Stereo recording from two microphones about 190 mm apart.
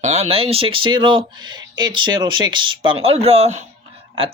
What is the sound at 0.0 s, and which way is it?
Speech, 35° right (ahead or behind).